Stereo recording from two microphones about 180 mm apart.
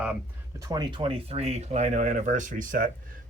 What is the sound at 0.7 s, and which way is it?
Speech, 25° right (ahead or behind).